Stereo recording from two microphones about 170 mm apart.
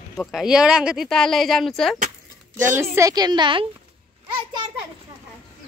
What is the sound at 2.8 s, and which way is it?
Speech, 20° right (ahead or behind).